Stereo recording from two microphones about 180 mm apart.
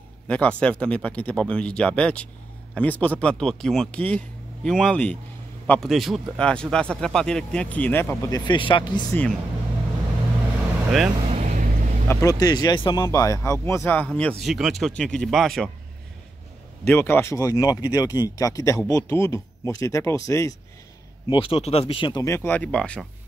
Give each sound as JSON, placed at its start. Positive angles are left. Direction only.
{"t": 0.3, "sound": "speech", "side_deg": 5}
{"t": 9.1, "sound": "speech", "side_deg": 5}
{"t": 11.2, "sound": "vehicle", "side_deg": -40}
{"t": 12.1, "sound": "speech", "side_deg": 20}
{"t": 16.8, "sound": "speech", "side_deg": 10}
{"t": 21.3, "sound": "speech", "side_deg": 30}